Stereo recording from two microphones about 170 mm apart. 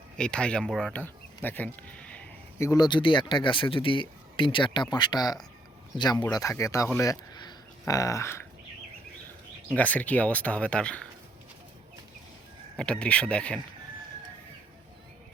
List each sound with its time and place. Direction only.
0.2 s speech: 5° left (ahead or behind)
2.6 s speech: 25° left (ahead or behind)
9.6 s speech: 10° left (ahead or behind)
12.7 s speech: 5° left (ahead or behind)